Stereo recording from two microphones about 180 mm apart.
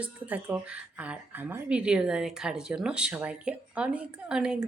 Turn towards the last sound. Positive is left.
turn(degrees=-5)  # may be behind; listen again after turning